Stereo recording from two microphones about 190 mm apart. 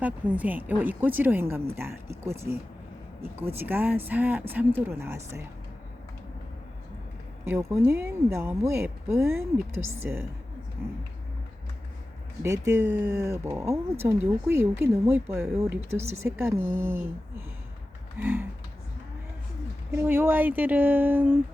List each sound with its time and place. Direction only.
0.0 s a woman's voice: 10° right (ahead or behind)
7.4 s a woman's voice: 10° right (ahead or behind)
12.4 s a woman's voice: 15° right (ahead or behind)
18.2 s a woman's voice: 10° right (ahead or behind)
19.9 s a woman's voice: 10° right (ahead or behind)